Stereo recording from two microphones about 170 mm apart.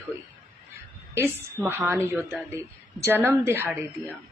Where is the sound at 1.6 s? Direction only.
10° right (ahead or behind).